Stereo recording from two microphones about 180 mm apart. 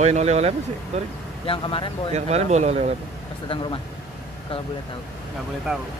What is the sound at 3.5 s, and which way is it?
Speech, 30° left (ahead or behind).